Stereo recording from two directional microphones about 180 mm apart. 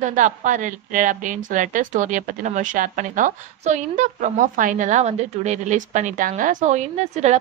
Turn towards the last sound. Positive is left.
turn(degrees=-40)  # may be behind; listen again after turning